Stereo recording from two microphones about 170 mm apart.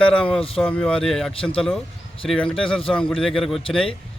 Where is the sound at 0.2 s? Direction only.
35° left (ahead or behind).